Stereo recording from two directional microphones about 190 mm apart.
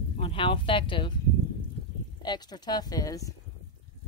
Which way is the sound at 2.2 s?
20° left (ahead or behind).